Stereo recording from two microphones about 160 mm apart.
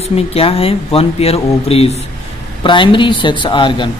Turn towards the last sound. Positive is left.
turn(degrees=30)  # may be behind; listen again after turning